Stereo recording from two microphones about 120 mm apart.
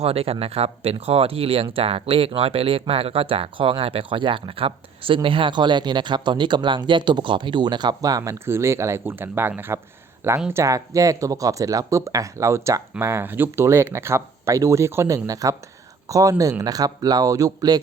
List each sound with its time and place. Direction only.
0.0 s speech: 55° right (ahead or behind); by 17.7 s 30° right (ahead or behind)